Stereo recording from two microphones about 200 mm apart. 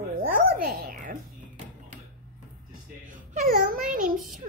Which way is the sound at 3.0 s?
40° right (ahead or behind).